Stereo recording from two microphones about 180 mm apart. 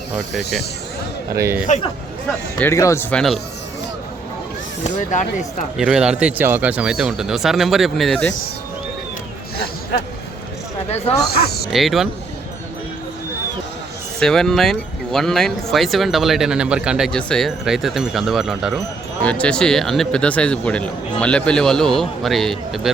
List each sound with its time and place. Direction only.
1.4 s a man's voice: 15° right (ahead or behind)
2.6 s speech: 15° left (ahead or behind)
4.8 s speech: 40° left (ahead or behind)
5.7 s speech: 5° right (ahead or behind)
11.3 s speech: 60° left (ahead or behind)
11.7 s speech: centre (ahead or behind)
14.2 s speech: 5° left (ahead or behind)